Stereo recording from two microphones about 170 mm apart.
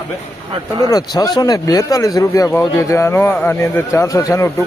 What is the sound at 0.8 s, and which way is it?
Speech, 25° left (ahead or behind).